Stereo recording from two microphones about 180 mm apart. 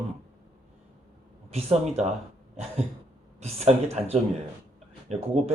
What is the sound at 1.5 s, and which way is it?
Speech, 35° right (ahead or behind).